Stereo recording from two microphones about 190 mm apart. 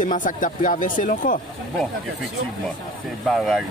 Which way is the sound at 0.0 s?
45° left (ahead or behind).